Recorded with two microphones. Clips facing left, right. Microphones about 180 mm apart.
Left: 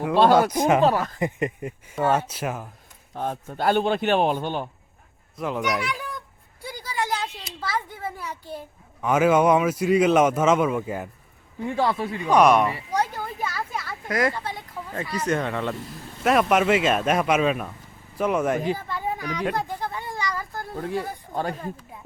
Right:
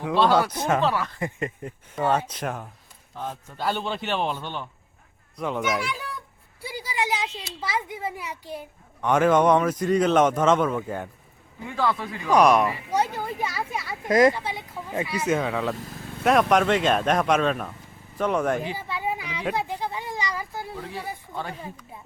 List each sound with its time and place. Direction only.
0.2 s a man's voice: 50° left (ahead or behind)
0.5 s a man's voice: 15° left (ahead or behind)
0.8 s a man's voice: 45° left (ahead or behind)
1.2 s a man's voice: 15° left (ahead or behind)
3.2 s a man's voice: 55° left (ahead or behind)
5.4 s a child's voice: centre (ahead or behind)
9.0 s a man's voice: 5° left (ahead or behind)
11.7 s speech: 35° left (ahead or behind)
12.3 s a child's voice: centre (ahead or behind); by 14.3 s 20° right (ahead or behind)
14.3 s a child's voice: 10° right (ahead or behind)
18.8 s speech: 10° right (ahead or behind)
20.7 s a man's voice: 50° left (ahead or behind)